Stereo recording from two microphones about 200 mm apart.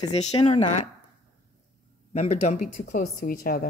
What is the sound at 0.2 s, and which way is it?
Speech, 30° left (ahead or behind).